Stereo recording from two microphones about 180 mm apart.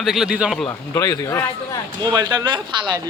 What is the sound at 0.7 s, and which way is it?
Speech, 15° left (ahead or behind).